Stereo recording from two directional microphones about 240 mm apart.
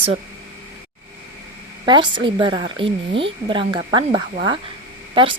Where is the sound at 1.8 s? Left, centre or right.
Centre.